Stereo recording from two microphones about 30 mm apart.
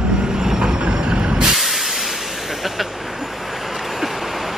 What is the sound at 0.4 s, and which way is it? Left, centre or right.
Vehicle, right.